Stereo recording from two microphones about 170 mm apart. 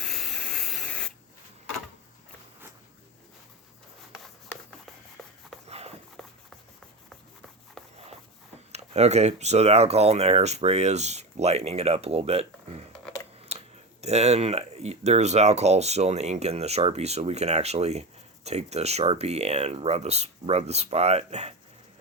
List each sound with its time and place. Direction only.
0.0 s spray: centre (ahead or behind)
4.1 s writing: centre (ahead or behind)
5.2 s rub: centre (ahead or behind)
5.6 s a sound: 35° right (ahead or behind)
6.2 s a sound: centre (ahead or behind)
7.8 s rub: 5° left (ahead or behind)
8.7 s speech: 40° right (ahead or behind)
13.5 s a sound: 40° right (ahead or behind)
14.0 s speech: 40° right (ahead or behind)